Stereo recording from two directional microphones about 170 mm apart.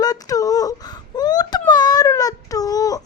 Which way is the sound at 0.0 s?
20° left (ahead or behind).